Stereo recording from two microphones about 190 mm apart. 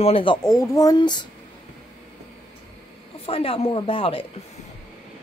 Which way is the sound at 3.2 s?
30° left (ahead or behind).